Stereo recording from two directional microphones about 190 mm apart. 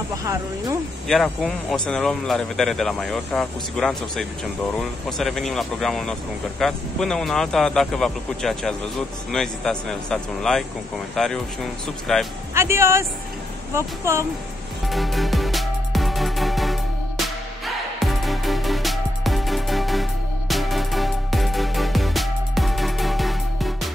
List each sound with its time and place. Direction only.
0.2 s speech: 15° right (ahead or behind)
1.0 s speech: centre (ahead or behind)
12.5 s speech: 15° right (ahead or behind)
14.9 s music: centre (ahead or behind)
17.9 s music: centre (ahead or behind)